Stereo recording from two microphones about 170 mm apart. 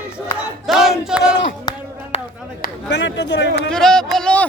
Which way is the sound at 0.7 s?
Centre (ahead or behind).